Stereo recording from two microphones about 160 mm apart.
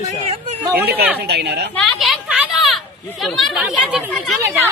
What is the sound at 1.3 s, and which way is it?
Speech, 90° right.